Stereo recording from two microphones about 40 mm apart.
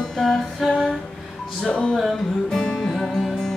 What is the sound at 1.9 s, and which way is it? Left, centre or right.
Music, centre.